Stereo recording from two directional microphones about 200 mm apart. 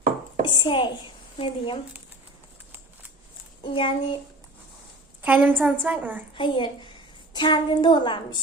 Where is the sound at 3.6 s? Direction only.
25° left (ahead or behind).